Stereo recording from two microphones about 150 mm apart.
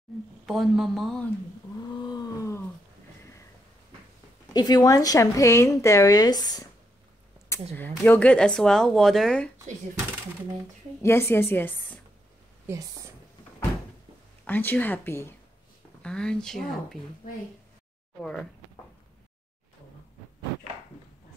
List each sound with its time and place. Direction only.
0.5 s speech: centre (ahead or behind)
4.6 s a woman's voice: 25° left (ahead or behind)
7.4 s speech: 15° left (ahead or behind)
11.0 s a woman's voice: 15° left (ahead or behind)
12.6 s a woman's voice: 20° right (ahead or behind)
14.4 s a woman's voice: 10° left (ahead or behind)
18.2 s speech: 5° left (ahead or behind)